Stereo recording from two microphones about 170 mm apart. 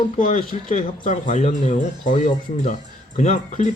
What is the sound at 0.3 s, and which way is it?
Speech, 45° left (ahead or behind).